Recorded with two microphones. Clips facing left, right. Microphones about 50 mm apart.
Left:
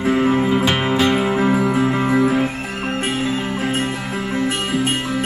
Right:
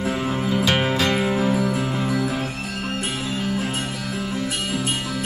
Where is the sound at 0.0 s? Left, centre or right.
Left.